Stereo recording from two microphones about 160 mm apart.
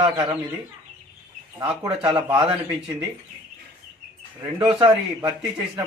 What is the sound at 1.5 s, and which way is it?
A man's voice, 25° right (ahead or behind).